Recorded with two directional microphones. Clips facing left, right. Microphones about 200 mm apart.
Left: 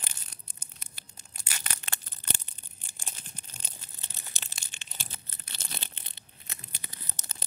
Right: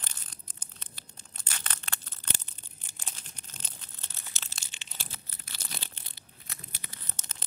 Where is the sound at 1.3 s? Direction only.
10° left (ahead or behind).